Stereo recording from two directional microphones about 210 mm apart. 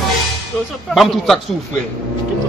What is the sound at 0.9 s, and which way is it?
Speech, centre (ahead or behind).